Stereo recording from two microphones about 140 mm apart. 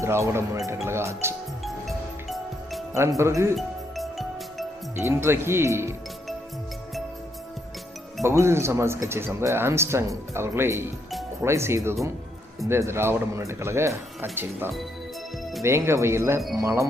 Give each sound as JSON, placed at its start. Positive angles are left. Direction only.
{"t": 0.0, "sound": "speech", "side_deg": -20}
{"t": 1.6, "sound": "music", "side_deg": 0}
{"t": 2.9, "sound": "speech", "side_deg": -20}
{"t": 3.5, "sound": "music", "side_deg": 0}
{"t": 4.9, "sound": "speech", "side_deg": -20}
{"t": 8.2, "sound": "speech", "side_deg": -20}